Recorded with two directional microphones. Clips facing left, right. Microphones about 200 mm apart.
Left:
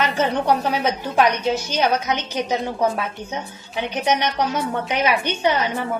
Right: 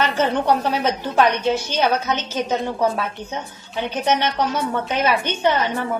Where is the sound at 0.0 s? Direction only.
10° left (ahead or behind).